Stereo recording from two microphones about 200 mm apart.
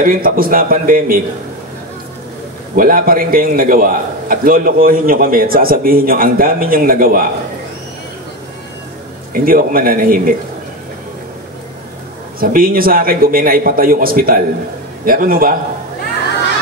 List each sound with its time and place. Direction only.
0.0 s a man's voice: 45° right (ahead or behind)
2.7 s a man's voice: 45° right (ahead or behind)
9.3 s a man's voice: 45° right (ahead or behind)
12.4 s a man's voice: 45° right (ahead or behind)